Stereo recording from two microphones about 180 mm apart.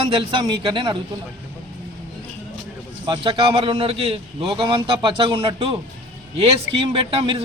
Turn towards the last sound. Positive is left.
turn(degrees=-30)  # may be behind; listen again after turning